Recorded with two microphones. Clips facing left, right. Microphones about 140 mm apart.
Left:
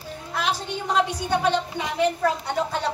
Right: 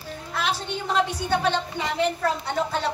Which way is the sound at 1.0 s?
15° left (ahead or behind).